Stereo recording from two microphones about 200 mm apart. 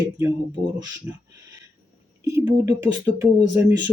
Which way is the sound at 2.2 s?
15° right (ahead or behind).